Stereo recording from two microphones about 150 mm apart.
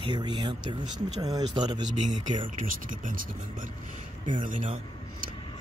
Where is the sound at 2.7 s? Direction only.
65° right (ahead or behind).